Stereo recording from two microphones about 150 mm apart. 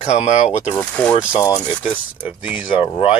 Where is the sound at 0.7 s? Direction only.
10° left (ahead or behind).